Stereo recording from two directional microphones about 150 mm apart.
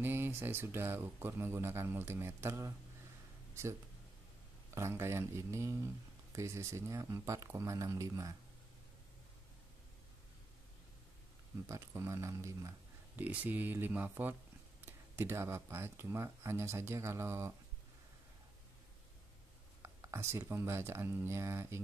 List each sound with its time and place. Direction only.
0.0 s speech: 15° right (ahead or behind)
4.7 s speech: 20° right (ahead or behind)
11.6 s speech: 20° right (ahead or behind)
19.8 s speech: 20° right (ahead or behind)